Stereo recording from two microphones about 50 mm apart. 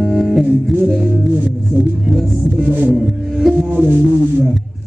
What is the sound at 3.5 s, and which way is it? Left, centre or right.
Speech, right.